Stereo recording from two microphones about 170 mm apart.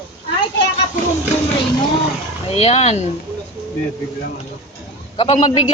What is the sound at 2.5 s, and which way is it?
Speech, 35° left (ahead or behind).